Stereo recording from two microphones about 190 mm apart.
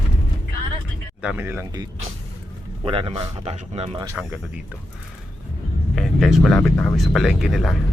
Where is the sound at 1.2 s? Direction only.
5° right (ahead or behind).